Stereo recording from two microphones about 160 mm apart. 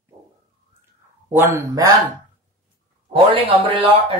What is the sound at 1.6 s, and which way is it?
Speech, 20° right (ahead or behind).